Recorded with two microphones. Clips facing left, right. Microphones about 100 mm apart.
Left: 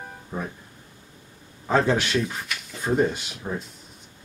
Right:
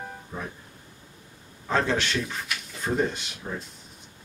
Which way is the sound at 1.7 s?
5° left (ahead or behind).